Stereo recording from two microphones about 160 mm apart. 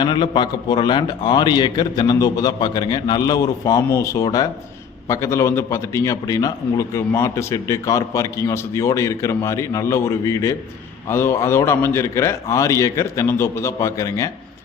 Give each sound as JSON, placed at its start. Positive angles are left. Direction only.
{"t": 0.0, "sound": "a man's voice", "side_deg": 30}